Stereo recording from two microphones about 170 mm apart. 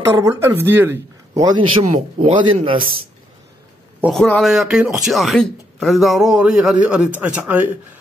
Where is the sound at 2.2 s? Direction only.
30° right (ahead or behind).